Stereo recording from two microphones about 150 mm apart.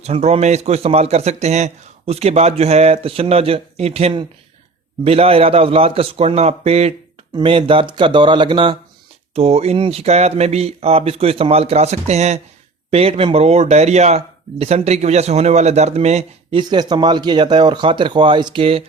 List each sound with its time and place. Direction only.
0.0 s a man's voice: 45° right (ahead or behind)
9.3 s a man's voice: 45° right (ahead or behind)
16.6 s speech: 30° right (ahead or behind)